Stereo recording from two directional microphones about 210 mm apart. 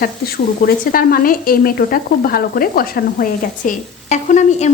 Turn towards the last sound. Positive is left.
turn(degrees=35)  # may be behind; listen again after turning